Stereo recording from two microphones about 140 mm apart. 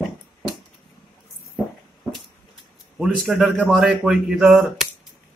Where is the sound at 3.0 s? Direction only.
Centre (ahead or behind).